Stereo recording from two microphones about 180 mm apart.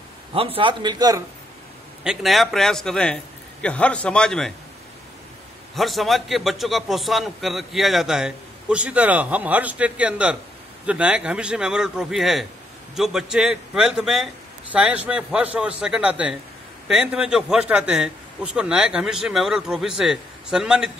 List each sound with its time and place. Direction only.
0.3 s a man's voice: 30° right (ahead or behind)
2.0 s a man's voice: centre (ahead or behind)
5.8 s a man's voice: centre (ahead or behind)